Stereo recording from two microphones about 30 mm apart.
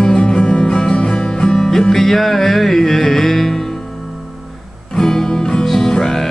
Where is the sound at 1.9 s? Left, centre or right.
Centre.